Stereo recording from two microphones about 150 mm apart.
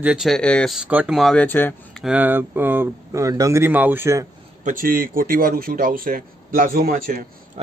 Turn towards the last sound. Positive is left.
turn(degrees=-75)  # may be behind; listen again after turning